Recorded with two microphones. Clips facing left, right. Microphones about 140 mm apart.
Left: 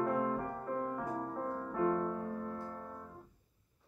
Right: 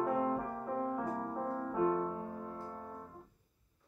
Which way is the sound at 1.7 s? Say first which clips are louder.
Even; 15° right (ahead or behind).